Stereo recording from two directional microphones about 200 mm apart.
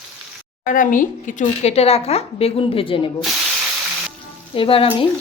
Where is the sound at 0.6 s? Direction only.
40° left (ahead or behind); by 3.1 s 25° left (ahead or behind).